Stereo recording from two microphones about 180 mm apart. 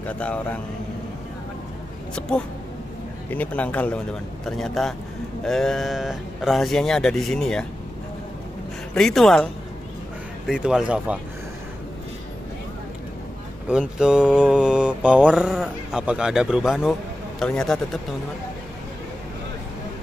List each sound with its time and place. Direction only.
0.0 s speech: 5° left (ahead or behind)
2.1 s mantra: 5° left (ahead or behind)
3.3 s speech: 10° left (ahead or behind)
4.5 s mantra: centre (ahead or behind)
8.9 s mantra: centre (ahead or behind)
13.7 s mantra: 5° right (ahead or behind)